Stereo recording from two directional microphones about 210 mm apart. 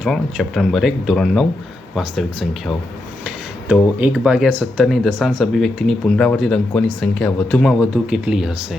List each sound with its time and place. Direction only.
0.0 s speech: centre (ahead or behind)